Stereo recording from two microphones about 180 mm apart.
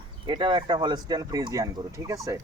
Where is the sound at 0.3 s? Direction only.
25° right (ahead or behind).